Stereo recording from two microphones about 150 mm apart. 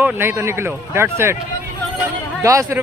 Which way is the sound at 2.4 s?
20° right (ahead or behind).